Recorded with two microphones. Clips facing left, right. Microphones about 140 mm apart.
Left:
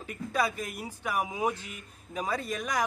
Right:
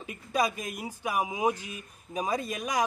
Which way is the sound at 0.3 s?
15° right (ahead or behind).